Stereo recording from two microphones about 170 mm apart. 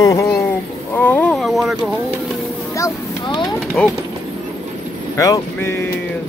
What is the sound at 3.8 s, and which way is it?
Speech, 5° left (ahead or behind).